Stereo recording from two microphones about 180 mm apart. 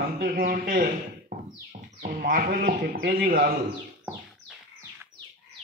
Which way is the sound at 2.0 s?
50° right (ahead or behind).